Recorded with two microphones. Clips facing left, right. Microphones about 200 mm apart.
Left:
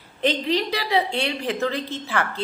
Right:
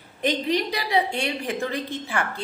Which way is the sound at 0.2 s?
15° right (ahead or behind).